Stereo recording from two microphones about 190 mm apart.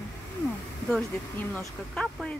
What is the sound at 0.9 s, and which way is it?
Speech, 5° left (ahead or behind).